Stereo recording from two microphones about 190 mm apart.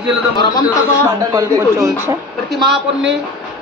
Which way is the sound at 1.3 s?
15° right (ahead or behind).